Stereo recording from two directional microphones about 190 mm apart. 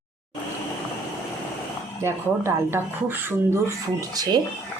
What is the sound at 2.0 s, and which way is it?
Speech, 15° right (ahead or behind).